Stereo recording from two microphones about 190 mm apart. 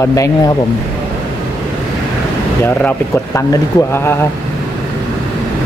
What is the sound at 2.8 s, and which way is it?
Speech, 10° left (ahead or behind).